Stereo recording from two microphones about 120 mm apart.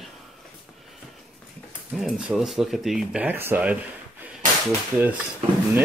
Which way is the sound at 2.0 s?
5° right (ahead or behind).